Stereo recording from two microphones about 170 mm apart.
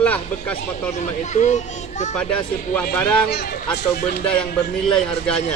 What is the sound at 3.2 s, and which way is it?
Speech, 80° left.